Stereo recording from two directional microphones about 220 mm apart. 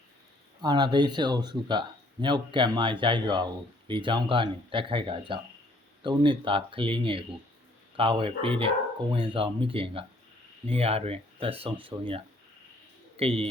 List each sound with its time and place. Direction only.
0.6 s speech: 20° right (ahead or behind)